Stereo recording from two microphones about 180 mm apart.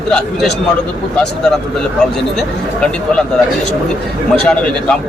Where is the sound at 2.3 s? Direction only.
5° left (ahead or behind).